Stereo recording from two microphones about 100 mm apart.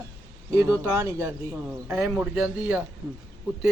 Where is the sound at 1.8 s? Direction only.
10° right (ahead or behind).